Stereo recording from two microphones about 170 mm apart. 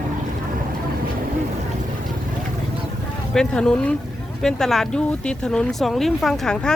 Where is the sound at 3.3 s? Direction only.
5° left (ahead or behind).